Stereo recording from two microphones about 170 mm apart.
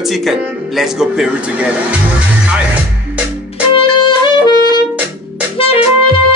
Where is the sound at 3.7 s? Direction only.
30° left (ahead or behind).